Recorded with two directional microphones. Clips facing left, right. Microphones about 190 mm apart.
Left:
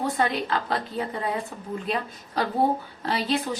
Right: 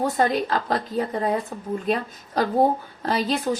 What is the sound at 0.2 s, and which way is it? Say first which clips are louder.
A woman's voice: right 4 dB; 40° right (ahead or behind).